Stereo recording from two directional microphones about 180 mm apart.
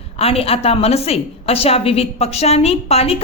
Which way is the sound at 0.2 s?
35° left (ahead or behind).